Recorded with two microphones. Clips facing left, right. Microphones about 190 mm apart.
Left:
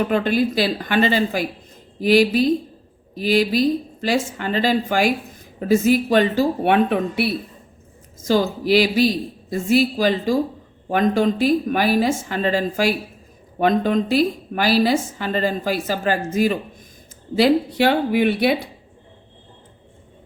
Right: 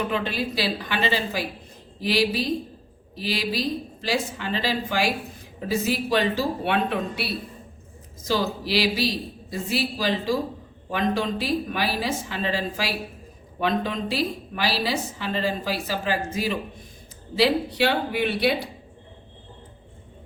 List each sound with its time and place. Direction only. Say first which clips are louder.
0.1 s a woman's voice: left 8 dB; 50° left (ahead or behind)
8.3 s a woman's voice: left 7 dB; 50° left (ahead or behind)